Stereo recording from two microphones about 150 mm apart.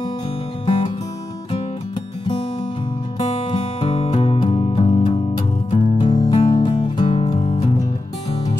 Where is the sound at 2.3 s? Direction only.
35° left (ahead or behind).